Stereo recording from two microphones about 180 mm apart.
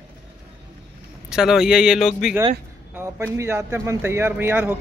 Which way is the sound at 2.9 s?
15° right (ahead or behind).